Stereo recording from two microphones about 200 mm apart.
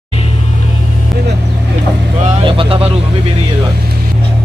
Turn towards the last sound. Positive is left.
turn(degrees=-25)  # may be behind; listen again after turning